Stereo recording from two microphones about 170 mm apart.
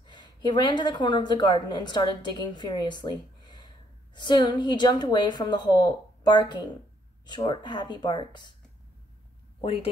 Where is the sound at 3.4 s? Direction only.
25° left (ahead or behind).